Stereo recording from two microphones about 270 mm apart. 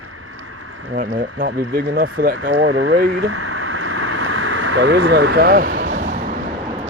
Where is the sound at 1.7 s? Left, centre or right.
Right.